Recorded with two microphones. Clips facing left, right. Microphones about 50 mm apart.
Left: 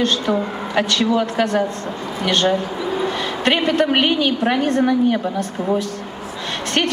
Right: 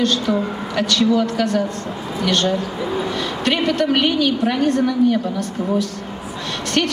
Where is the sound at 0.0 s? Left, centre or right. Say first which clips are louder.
Even; left.